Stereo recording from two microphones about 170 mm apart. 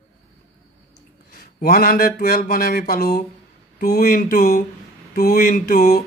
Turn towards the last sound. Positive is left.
turn(degrees=60)  # may be behind; listen again after turning